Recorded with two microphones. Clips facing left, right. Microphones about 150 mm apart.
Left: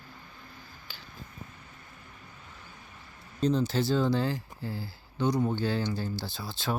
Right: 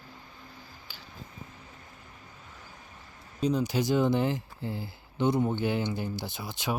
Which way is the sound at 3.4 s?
10° right (ahead or behind).